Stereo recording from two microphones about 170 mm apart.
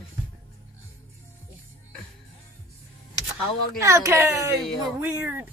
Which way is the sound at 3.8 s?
15° right (ahead or behind).